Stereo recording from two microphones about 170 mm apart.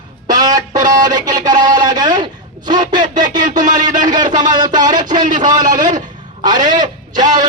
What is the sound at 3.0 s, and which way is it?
A man's voice, 50° right (ahead or behind).